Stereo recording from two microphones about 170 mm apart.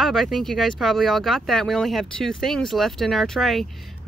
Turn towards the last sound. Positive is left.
turn(degrees=0)  # may be behind; listen again after turning